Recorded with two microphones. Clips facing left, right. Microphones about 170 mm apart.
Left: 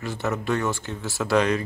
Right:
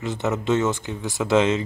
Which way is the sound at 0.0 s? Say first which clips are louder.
Right 3 dB; 20° right (ahead or behind).